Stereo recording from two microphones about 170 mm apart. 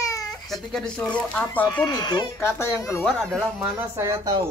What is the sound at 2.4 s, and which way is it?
Speech, 15° left (ahead or behind).